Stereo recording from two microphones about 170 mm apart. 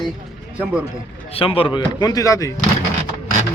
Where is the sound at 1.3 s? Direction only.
35° left (ahead or behind).